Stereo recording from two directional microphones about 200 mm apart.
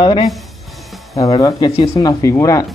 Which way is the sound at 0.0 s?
25° left (ahead or behind).